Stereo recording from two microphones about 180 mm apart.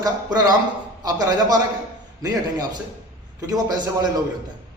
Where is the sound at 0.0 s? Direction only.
20° right (ahead or behind).